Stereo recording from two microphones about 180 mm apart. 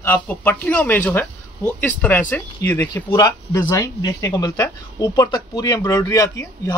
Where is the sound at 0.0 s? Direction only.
10° left (ahead or behind).